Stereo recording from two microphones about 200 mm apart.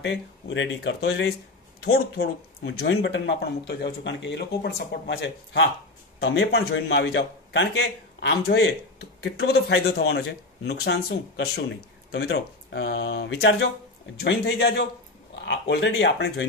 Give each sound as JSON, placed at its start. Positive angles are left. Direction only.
{"t": 0.0, "sound": "speech", "side_deg": 70}
{"t": 1.9, "sound": "speech", "side_deg": 55}